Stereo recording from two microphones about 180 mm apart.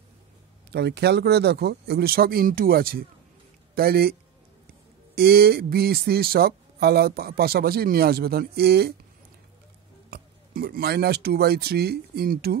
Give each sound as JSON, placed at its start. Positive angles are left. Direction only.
{"t": 0.7, "sound": "a man's voice", "side_deg": -70}
{"t": 10.0, "sound": "speech", "side_deg": -60}